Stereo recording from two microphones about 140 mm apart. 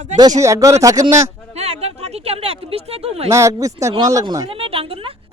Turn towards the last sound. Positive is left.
turn(degrees=-40)  # may be behind; listen again after turning